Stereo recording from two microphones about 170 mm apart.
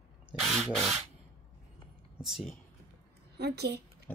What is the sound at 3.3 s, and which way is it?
Speech, 75° right (ahead or behind).